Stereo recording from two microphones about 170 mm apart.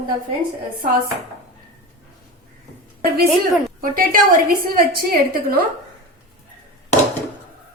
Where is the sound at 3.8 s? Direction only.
55° right (ahead or behind).